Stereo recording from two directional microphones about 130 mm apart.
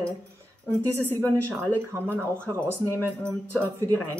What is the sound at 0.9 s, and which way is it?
Speech, 20° right (ahead or behind).